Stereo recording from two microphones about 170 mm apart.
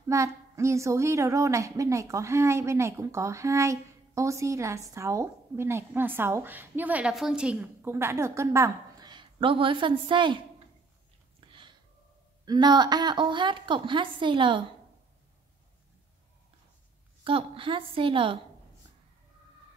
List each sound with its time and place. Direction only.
0.1 s a woman's voice: 15° right (ahead or behind)
11.4 s a sound: 30° right (ahead or behind)
12.4 s a woman's voice: 25° right (ahead or behind)
17.2 s a woman's voice: 30° right (ahead or behind)